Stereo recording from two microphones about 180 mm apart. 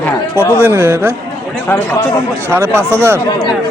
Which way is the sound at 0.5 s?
15° right (ahead or behind).